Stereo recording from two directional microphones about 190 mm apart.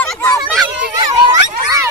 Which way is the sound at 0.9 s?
20° right (ahead or behind).